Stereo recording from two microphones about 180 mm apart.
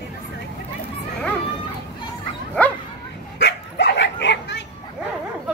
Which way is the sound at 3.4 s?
75° left (ahead or behind).